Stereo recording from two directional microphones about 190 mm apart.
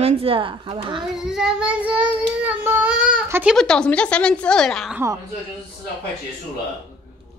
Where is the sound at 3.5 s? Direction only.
5° left (ahead or behind).